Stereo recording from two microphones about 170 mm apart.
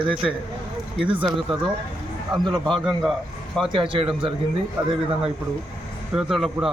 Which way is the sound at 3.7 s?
30° right (ahead or behind).